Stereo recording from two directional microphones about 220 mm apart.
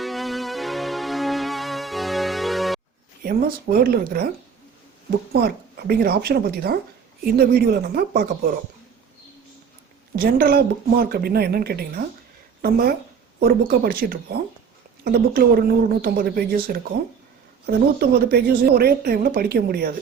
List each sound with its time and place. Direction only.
0.0 s music: centre (ahead or behind)
3.2 s a woman's voice: 40° right (ahead or behind)
5.4 s a woman's voice: 45° right (ahead or behind)
10.2 s a woman's voice: 45° right (ahead or behind)